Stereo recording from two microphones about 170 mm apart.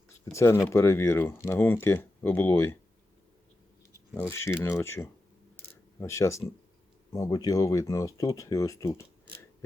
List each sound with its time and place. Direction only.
0.3 s speech: 15° left (ahead or behind)
3.9 s speech: 15° left (ahead or behind)
5.5 s a sound: 15° left (ahead or behind)
7.1 s speech: 20° left (ahead or behind)